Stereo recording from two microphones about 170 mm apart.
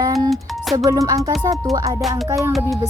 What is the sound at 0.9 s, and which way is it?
Speech, 20° right (ahead or behind).